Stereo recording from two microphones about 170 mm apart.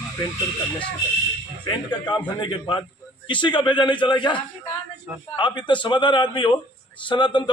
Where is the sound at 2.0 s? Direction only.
25° left (ahead or behind).